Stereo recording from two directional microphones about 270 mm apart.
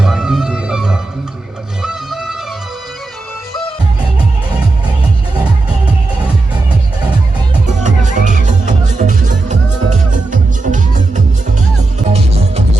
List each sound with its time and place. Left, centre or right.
0.0 s music: centre
7.9 s music: right